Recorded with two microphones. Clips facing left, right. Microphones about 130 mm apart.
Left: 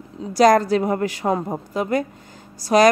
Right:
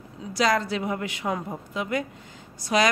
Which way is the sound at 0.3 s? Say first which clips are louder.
Left 9 dB; 45° left (ahead or behind).